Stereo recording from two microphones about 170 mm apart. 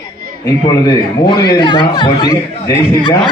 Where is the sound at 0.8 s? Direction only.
25° left (ahead or behind).